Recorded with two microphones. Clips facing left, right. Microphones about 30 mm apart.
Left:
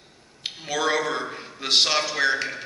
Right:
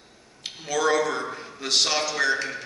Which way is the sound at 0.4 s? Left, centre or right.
Left.